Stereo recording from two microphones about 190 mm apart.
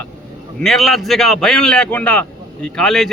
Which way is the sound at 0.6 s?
Centre (ahead or behind).